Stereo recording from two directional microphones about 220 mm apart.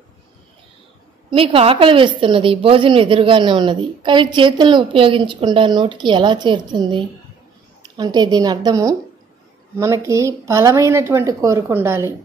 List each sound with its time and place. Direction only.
1.3 s a woman's voice: 25° right (ahead or behind)